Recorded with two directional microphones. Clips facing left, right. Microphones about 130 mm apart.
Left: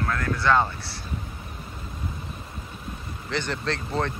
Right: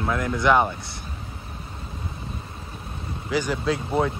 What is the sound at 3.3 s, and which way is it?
Speech, 10° right (ahead or behind).